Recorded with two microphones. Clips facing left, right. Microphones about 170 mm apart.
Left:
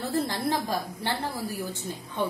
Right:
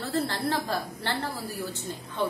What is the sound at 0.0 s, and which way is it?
Speech, 15° left (ahead or behind).